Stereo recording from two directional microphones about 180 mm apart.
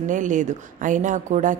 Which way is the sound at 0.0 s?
45° right (ahead or behind).